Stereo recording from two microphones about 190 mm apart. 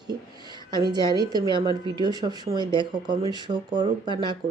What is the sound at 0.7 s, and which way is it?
A woman's voice, 20° right (ahead or behind).